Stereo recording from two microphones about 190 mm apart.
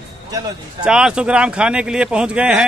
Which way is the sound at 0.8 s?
5° right (ahead or behind).